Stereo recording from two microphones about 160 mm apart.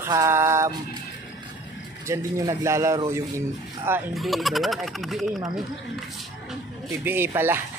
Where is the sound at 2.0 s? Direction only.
20° right (ahead or behind).